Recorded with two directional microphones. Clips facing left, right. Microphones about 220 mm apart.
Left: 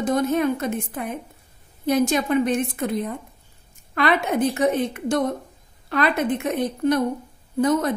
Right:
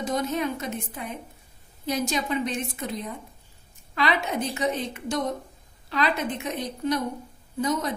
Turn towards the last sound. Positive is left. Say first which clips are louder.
# left 7 dB
turn(degrees=55)  # may be behind; listen again after turning